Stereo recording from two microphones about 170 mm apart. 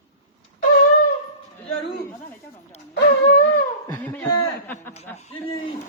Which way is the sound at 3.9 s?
10° left (ahead or behind).